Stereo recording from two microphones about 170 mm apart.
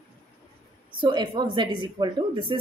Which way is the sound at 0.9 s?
30° right (ahead or behind).